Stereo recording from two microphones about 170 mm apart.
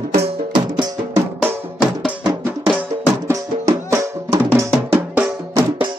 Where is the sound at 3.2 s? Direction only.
20° right (ahead or behind).